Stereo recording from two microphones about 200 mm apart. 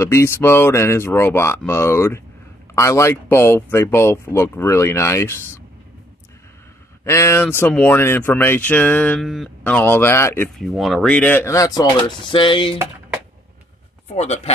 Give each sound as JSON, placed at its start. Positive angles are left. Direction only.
{"t": 0.0, "sound": "speech", "side_deg": 15}
{"t": 7.1, "sound": "speech", "side_deg": 10}
{"t": 10.6, "sound": "speech", "side_deg": 0}
{"t": 14.1, "sound": "speech", "side_deg": 35}